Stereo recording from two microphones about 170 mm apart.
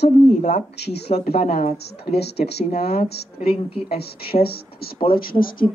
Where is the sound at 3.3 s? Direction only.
35° left (ahead or behind).